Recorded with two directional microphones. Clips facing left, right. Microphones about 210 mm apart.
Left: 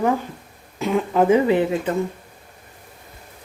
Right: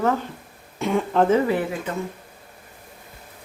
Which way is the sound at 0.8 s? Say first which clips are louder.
Left 1 dB; centre (ahead or behind).